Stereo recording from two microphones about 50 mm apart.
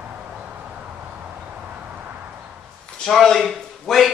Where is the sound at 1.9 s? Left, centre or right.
Right.